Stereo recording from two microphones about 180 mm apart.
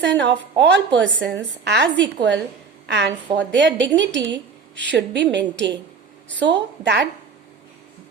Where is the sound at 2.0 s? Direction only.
80° right.